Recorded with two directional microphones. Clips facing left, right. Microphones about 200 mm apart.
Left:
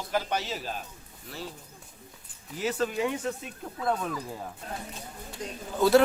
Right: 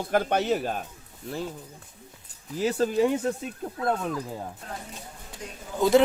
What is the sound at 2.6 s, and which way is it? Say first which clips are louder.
Speech: right 5 dB; 35° right (ahead or behind).